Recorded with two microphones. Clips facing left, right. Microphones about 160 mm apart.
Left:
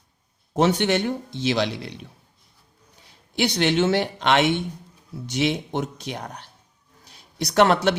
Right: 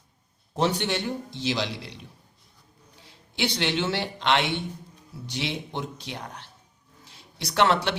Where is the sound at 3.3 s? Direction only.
45° left (ahead or behind).